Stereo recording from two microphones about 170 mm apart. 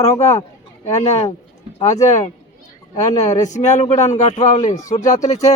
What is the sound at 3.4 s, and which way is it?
Speech, 45° left (ahead or behind).